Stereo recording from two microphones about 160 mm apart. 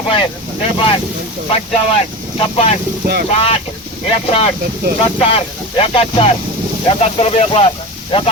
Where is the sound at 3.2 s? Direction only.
40° left (ahead or behind).